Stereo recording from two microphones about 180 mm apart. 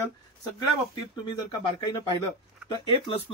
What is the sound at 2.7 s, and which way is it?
Speech, 30° left (ahead or behind).